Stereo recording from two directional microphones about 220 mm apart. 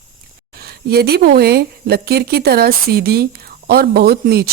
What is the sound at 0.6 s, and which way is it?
A woman's voice, 45° right (ahead or behind).